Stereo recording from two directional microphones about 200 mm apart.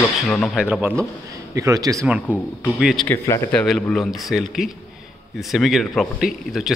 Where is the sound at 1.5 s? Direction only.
15° right (ahead or behind).